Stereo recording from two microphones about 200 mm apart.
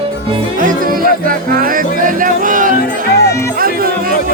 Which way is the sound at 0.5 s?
45° right (ahead or behind).